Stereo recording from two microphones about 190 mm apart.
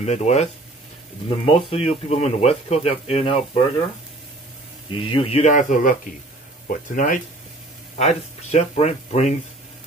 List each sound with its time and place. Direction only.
0.0 s speech: 35° left (ahead or behind)
5.0 s speech: 30° left (ahead or behind)